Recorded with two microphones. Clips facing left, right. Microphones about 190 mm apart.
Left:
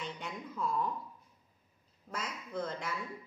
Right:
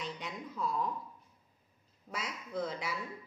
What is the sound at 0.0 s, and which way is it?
Speech, centre (ahead or behind).